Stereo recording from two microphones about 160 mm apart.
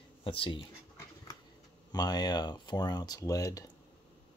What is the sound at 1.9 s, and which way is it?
Speech, 25° left (ahead or behind).